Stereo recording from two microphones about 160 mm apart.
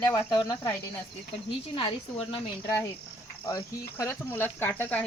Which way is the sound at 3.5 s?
15° left (ahead or behind).